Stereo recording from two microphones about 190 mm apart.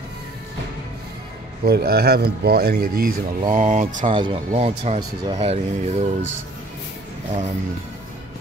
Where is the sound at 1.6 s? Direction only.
55° right (ahead or behind).